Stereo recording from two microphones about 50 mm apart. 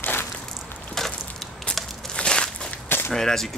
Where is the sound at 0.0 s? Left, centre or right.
Left.